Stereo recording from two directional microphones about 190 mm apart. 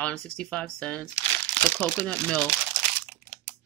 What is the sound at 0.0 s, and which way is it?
Speech, 5° left (ahead or behind).